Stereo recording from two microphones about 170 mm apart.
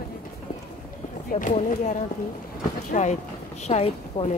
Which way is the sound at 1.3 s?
45° left (ahead or behind).